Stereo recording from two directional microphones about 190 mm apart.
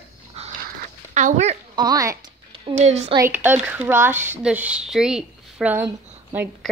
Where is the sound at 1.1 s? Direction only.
35° right (ahead or behind).